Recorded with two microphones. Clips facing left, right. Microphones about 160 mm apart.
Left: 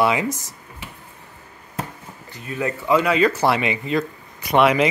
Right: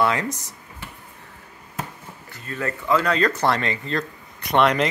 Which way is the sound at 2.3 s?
15° left (ahead or behind).